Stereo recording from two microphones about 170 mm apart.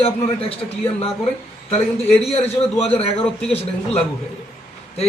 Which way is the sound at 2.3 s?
35° left (ahead or behind).